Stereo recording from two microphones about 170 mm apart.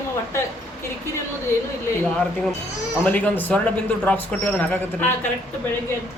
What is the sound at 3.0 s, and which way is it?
Speech, 10° left (ahead or behind).